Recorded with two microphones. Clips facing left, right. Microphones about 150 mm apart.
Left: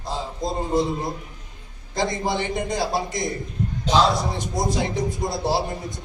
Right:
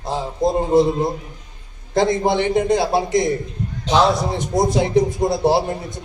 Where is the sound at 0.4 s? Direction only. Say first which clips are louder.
Right 8 dB; 55° right (ahead or behind).